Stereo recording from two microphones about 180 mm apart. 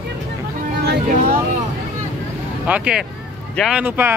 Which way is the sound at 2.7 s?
5° right (ahead or behind).